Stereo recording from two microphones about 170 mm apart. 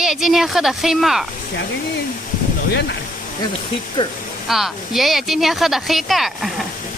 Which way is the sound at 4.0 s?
30° left (ahead or behind).